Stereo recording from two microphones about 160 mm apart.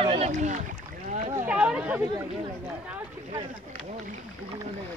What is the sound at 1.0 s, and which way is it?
Speech, 50° right (ahead or behind).